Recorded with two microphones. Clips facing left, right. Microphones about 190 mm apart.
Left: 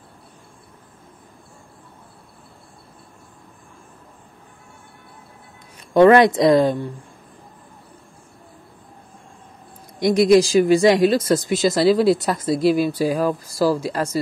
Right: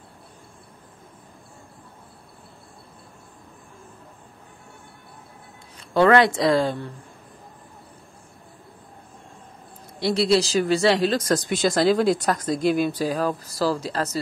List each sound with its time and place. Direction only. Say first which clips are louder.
5.9 s a woman's voice: left 5 dB; 20° left (ahead or behind)
9.9 s speech: left 6 dB; 15° left (ahead or behind)